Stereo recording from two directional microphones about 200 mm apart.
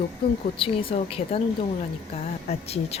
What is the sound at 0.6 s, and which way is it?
Speech, 25° left (ahead or behind).